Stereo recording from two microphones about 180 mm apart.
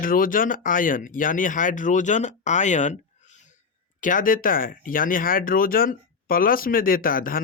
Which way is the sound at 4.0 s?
50° left (ahead or behind).